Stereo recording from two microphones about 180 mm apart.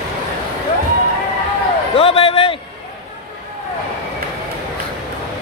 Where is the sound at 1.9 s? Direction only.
30° left (ahead or behind).